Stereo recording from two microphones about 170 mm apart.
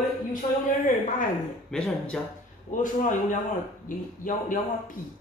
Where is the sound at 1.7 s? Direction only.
5° left (ahead or behind).